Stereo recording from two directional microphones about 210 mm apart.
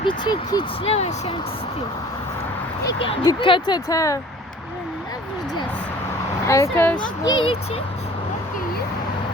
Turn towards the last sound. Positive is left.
turn(degrees=25)  # may be behind; listen again after turning